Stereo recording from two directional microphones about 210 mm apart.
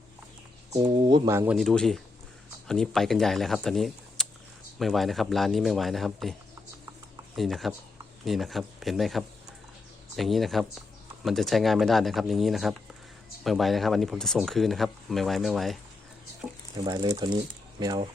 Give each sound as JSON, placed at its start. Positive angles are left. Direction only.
{"t": 0.7, "sound": "speech", "side_deg": -20}
{"t": 1.5, "sound": "speech", "side_deg": 0}
{"t": 7.3, "sound": "speech", "side_deg": 0}
{"t": 16.7, "sound": "speech", "side_deg": -20}